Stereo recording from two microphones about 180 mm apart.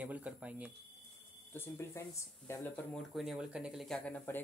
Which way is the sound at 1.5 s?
15° left (ahead or behind).